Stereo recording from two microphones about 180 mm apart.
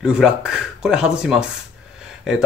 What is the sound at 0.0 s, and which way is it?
Speech, 5° right (ahead or behind).